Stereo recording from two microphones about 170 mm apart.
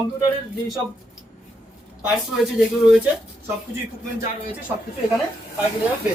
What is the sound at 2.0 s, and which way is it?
Speech, 5° right (ahead or behind).